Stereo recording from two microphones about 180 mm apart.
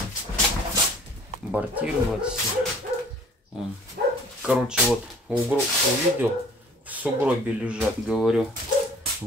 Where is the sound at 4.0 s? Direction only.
60° right (ahead or behind).